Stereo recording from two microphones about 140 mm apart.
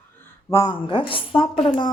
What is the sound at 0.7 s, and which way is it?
A woman's voice, 35° left (ahead or behind).